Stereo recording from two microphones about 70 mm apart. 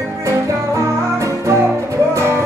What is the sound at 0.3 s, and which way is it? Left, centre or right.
Music, right.